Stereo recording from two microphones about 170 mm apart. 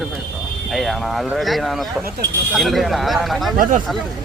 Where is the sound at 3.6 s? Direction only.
50° right (ahead or behind).